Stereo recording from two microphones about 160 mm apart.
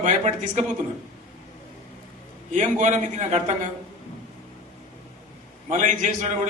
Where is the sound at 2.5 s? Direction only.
50° right (ahead or behind).